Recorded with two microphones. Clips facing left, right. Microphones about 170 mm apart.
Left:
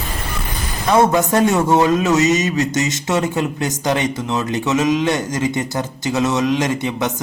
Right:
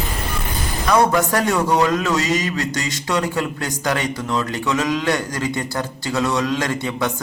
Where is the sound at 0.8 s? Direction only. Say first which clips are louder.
Left 2 dB; 20° left (ahead or behind).